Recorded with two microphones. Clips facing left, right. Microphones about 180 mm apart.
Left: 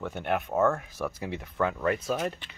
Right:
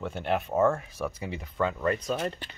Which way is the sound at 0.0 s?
Centre (ahead or behind).